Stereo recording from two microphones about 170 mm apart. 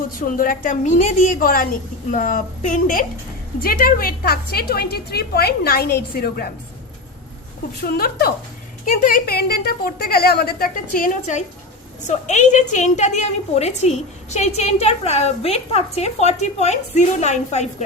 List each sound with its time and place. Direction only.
0.2 s a woman's voice: 55° left (ahead or behind)
7.8 s a woman's voice: 60° left (ahead or behind); by 17.8 s 40° left (ahead or behind)